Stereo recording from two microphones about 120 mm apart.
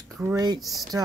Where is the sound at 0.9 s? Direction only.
30° right (ahead or behind).